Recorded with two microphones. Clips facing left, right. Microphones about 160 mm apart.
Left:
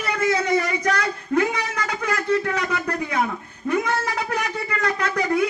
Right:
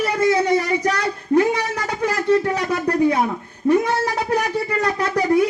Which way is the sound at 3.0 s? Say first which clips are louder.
Right 6 dB; 35° right (ahead or behind).